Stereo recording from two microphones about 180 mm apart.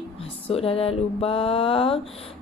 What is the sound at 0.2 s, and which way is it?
Mantra, 35° left (ahead or behind).